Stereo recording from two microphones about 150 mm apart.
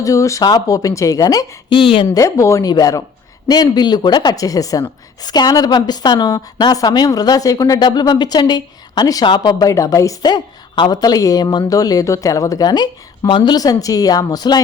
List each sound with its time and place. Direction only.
0.0 s a woman's voice: 20° left (ahead or behind)
1.8 s speech: 35° left (ahead or behind)
2.1 s a woman's voice: 20° left (ahead or behind)